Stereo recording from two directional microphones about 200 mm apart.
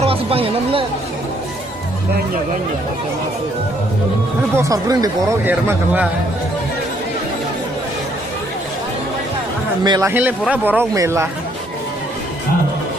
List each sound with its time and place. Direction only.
0.0 s speech: 30° right (ahead or behind)
4.5 s a man's voice: 15° right (ahead or behind)
9.8 s a man's voice: 20° right (ahead or behind)